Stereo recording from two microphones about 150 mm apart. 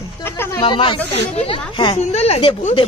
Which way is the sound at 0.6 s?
35° left (ahead or behind).